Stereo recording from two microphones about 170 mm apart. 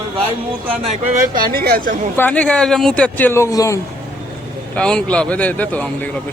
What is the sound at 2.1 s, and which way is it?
Speech, 10° left (ahead or behind).